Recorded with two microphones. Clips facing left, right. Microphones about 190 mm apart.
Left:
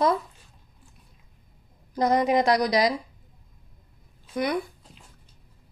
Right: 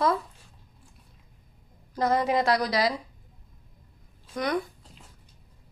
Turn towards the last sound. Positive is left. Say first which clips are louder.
# even
turn(degrees=10)  # may be behind; listen again after turning